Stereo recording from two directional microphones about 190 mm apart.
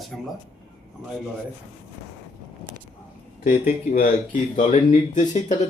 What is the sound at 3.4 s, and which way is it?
Speech, 45° left (ahead or behind).